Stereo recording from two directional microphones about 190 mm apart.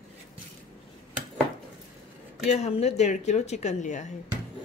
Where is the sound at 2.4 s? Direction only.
35° left (ahead or behind).